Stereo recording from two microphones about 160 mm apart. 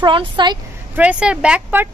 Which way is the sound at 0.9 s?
10° right (ahead or behind).